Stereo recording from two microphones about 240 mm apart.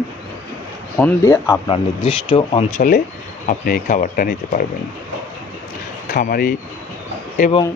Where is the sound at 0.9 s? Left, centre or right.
Centre.